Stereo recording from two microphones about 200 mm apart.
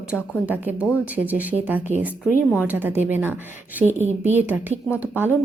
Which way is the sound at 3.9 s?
35° right (ahead or behind).